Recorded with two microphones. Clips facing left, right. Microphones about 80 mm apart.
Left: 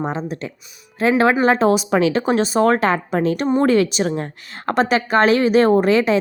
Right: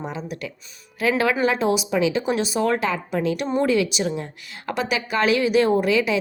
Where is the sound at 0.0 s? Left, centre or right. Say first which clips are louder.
Left 6 dB; left.